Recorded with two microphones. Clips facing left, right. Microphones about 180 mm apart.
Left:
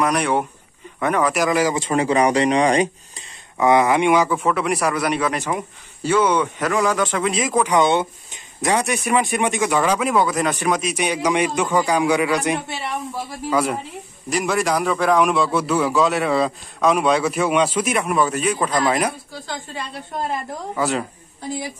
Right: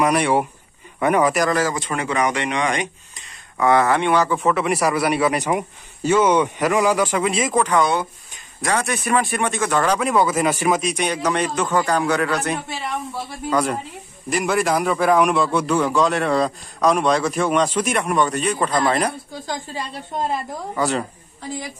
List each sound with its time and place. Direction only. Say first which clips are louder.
0.0 s a man's voice: right 2 dB; 5° right (ahead or behind)
1.3 s a man's voice: left 1 dB; 10° left (ahead or behind)
1.8 s speech: left 4 dB; 30° left (ahead or behind)
3.5 s a man's voice: left 1 dB; 15° left (ahead or behind)
4.4 s a man's voice: right 1 dB; centre (ahead or behind)
7.6 s a man's voice: left 2 dB; 20° left (ahead or behind)
20.7 s a man's voice: even; centre (ahead or behind)